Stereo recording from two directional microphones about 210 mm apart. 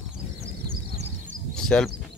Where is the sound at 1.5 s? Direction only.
5° left (ahead or behind).